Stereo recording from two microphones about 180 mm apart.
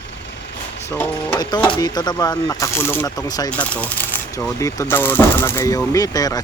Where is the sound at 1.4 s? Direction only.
20° left (ahead or behind).